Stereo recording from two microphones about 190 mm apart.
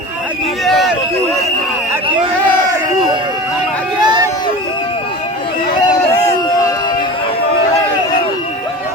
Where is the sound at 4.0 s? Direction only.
20° right (ahead or behind).